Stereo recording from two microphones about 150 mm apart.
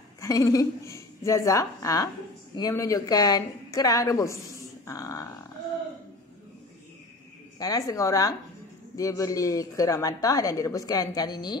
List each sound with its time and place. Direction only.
0.2 s speech: 20° left (ahead or behind)
7.5 s speech: 25° left (ahead or behind)